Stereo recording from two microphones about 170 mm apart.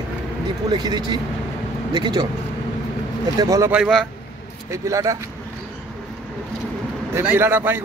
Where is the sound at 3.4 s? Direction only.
20° right (ahead or behind).